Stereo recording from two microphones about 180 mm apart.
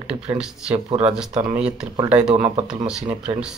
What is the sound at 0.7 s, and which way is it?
Speech, 35° right (ahead or behind).